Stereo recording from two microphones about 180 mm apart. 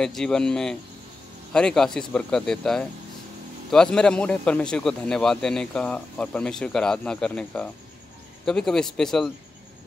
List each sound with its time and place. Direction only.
0.0 s a man's voice: 5° left (ahead or behind)